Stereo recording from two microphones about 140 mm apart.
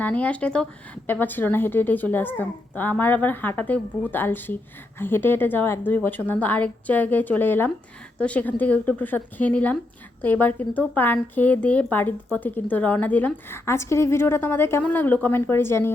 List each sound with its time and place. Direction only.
0.0 s a woman's voice: 10° left (ahead or behind)